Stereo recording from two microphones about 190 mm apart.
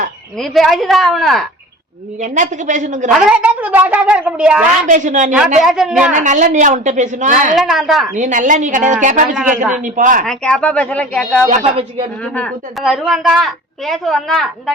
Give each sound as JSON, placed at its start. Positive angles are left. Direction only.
{"t": 0.3, "sound": "a woman's voice", "side_deg": 0}
{"t": 2.2, "sound": "a woman's voice", "side_deg": -40}
{"t": 3.1, "sound": "a woman's voice", "side_deg": -5}
{"t": 4.9, "sound": "a woman's voice", "side_deg": -40}
{"t": 5.6, "sound": "a woman's voice", "side_deg": 0}
{"t": 6.1, "sound": "a woman's voice", "side_deg": -40}
{"t": 7.5, "sound": "a woman's voice", "side_deg": 0}
{"t": 8.1, "sound": "a woman's voice", "side_deg": -40}
{"t": 10.2, "sound": "a woman's voice", "side_deg": 5}
{"t": 11.4, "sound": "a woman's voice", "side_deg": -30}
{"t": 12.2, "sound": "a woman's voice", "side_deg": 5}